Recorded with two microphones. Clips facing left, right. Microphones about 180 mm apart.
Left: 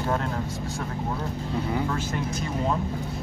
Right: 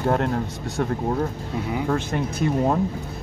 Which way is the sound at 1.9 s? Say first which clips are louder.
Right 4 dB; 50° right (ahead or behind).